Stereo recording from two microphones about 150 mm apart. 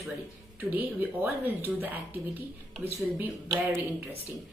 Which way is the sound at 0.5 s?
10° right (ahead or behind).